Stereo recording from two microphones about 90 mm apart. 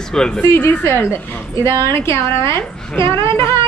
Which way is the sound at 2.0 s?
30° left (ahead or behind).